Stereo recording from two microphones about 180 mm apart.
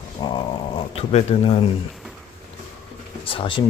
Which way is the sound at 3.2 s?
30° left (ahead or behind).